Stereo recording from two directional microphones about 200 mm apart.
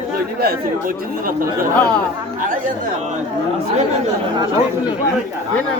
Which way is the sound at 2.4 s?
40° right (ahead or behind).